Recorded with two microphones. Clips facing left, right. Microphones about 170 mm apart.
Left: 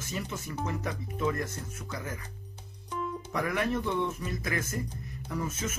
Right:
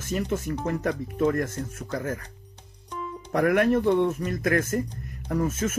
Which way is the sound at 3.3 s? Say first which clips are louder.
Right 10 dB; 55° right (ahead or behind).